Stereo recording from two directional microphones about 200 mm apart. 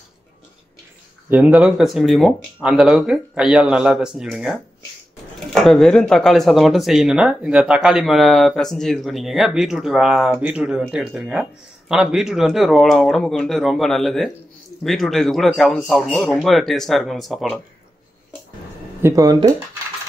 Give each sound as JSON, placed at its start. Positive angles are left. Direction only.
{"t": 1.3, "sound": "speech", "side_deg": -5}
{"t": 18.9, "sound": "speech", "side_deg": -15}